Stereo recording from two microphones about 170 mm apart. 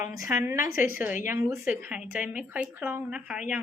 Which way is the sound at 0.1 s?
20° right (ahead or behind).